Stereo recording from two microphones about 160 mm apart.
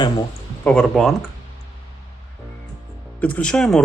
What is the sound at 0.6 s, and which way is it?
Speech, 5° left (ahead or behind).